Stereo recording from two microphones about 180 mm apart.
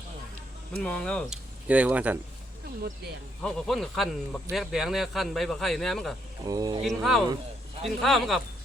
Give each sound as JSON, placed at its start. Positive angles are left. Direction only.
{"t": 0.8, "sound": "speech", "side_deg": 5}
{"t": 1.6, "sound": "speech", "side_deg": -10}
{"t": 3.4, "sound": "speech", "side_deg": 0}
{"t": 6.4, "sound": "speech", "side_deg": -20}
{"t": 6.8, "sound": "speech", "side_deg": 0}